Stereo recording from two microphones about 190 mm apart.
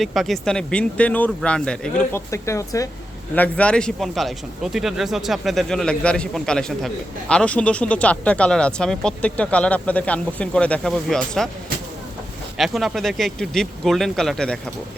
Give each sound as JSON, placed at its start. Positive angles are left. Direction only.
{"t": 0.0, "sound": "a man's voice", "side_deg": 0}
{"t": 2.3, "sound": "a man's voice", "side_deg": 15}
{"t": 12.5, "sound": "a man's voice", "side_deg": 0}